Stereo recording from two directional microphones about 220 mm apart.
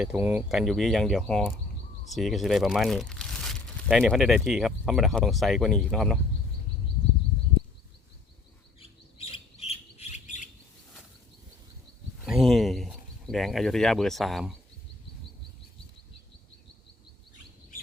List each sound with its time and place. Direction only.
0.0 s speech: 5° right (ahead or behind)
9.1 s bird: 25° left (ahead or behind)
12.2 s speech: centre (ahead or behind)